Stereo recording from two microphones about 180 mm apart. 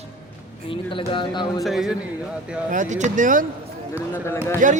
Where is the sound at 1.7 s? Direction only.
Centre (ahead or behind).